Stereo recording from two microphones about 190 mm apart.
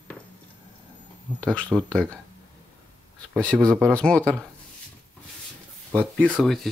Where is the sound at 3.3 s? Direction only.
5° left (ahead or behind).